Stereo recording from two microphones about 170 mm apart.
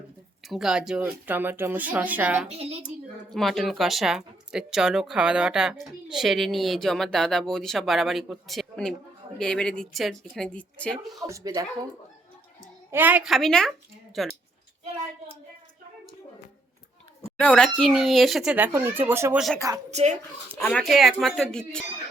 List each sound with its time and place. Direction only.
0.4 s speech: centre (ahead or behind)
2.5 s a woman's voice: 35° right (ahead or behind)
3.2 s a woman's voice: centre (ahead or behind)
11.2 s speech: 20° right (ahead or behind)
12.9 s speech: 10° right (ahead or behind)
17.3 s a woman's voice: 5° left (ahead or behind); by 19.4 s 10° right (ahead or behind)
19.9 s a woman's voice: 40° right (ahead or behind)
20.6 s a woman's voice: 10° left (ahead or behind)